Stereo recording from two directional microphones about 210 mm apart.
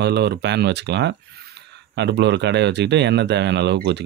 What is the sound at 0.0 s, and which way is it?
Speech, 50° right (ahead or behind).